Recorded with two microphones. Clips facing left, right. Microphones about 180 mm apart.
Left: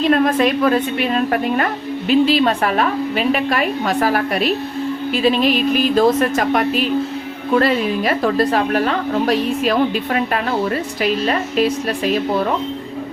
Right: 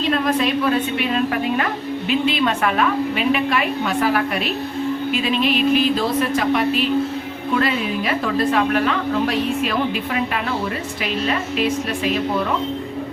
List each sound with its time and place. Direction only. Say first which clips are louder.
0.1 s a woman's voice: left 3 dB; 50° left (ahead or behind)
11.0 s a woman's voice: left 3 dB; 40° left (ahead or behind)